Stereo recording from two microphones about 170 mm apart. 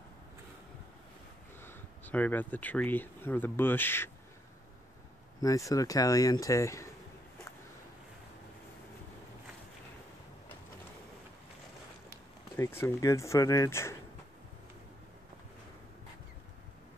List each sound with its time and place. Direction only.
1.6 s speech: 10° left (ahead or behind)
5.4 s speech: 20° left (ahead or behind)
12.1 s speech: 15° left (ahead or behind)